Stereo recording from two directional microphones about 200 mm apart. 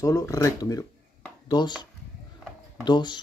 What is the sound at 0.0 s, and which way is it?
Speech, 15° left (ahead or behind).